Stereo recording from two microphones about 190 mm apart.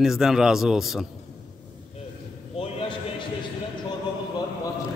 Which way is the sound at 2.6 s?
30° left (ahead or behind).